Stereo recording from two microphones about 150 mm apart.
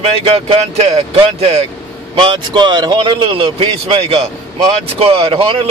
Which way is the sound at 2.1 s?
35° right (ahead or behind).